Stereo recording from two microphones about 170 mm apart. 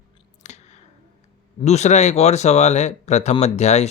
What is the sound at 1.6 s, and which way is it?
Speech, 40° left (ahead or behind).